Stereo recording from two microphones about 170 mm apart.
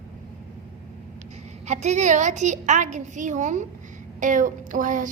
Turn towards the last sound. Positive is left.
turn(degrees=-50)  # may be behind; listen again after turning